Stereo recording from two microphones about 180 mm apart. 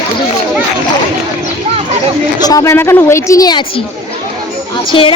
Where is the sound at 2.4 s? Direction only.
20° left (ahead or behind).